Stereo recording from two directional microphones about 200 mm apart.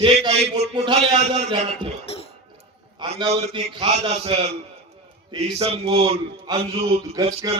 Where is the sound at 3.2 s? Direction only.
30° right (ahead or behind).